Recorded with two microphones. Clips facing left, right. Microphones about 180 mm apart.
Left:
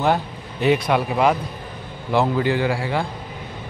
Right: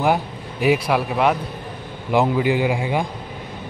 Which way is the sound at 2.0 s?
15° right (ahead or behind).